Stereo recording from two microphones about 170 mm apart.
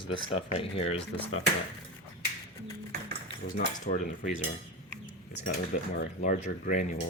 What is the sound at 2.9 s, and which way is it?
Dishes, 75° right (ahead or behind).